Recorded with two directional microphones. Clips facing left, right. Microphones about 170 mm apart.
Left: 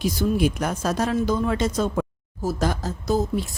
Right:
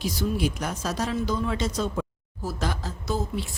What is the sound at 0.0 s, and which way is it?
Speech, 50° left (ahead or behind).